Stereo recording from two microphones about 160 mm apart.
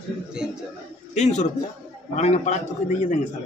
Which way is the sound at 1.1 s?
45° left (ahead or behind).